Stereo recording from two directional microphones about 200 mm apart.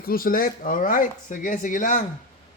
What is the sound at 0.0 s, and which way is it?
Speech, 45° left (ahead or behind).